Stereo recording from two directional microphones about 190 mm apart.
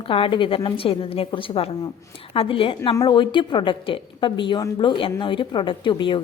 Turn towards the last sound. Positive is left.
turn(degrees=25)  # may be behind; listen again after turning